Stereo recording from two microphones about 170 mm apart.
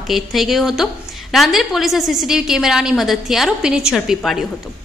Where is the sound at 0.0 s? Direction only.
Centre (ahead or behind).